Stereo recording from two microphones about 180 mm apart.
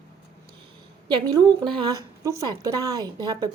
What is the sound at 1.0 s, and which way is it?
Speech, 25° right (ahead or behind).